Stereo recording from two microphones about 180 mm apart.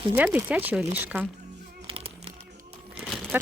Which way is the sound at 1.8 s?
30° right (ahead or behind).